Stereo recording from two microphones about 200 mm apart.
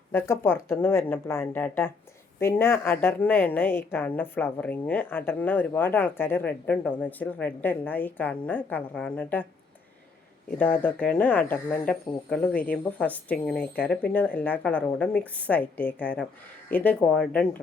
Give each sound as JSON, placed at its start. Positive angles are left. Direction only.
{"t": 0.1, "sound": "a woman's voice", "side_deg": 10}
{"t": 10.6, "sound": "a woman's voice", "side_deg": 10}